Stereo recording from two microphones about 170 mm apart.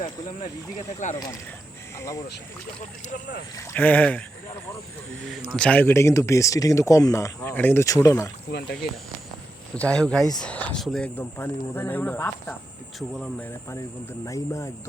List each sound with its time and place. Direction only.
0.0 s speech: 40° left (ahead or behind)
2.0 s speech: 20° left (ahead or behind)
3.6 s speech: 15° left (ahead or behind)
5.2 s speech: centre (ahead or behind); by 8.3 s 15° left (ahead or behind)
9.7 s speech: 5° left (ahead or behind)
11.2 s speech: 15° left (ahead or behind)
14.3 s speech: 20° left (ahead or behind)